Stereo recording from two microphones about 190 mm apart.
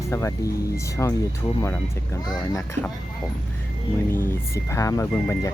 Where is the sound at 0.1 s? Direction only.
15° left (ahead or behind).